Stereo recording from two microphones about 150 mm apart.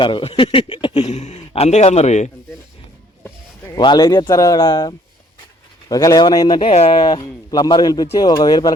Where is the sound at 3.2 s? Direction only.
20° left (ahead or behind).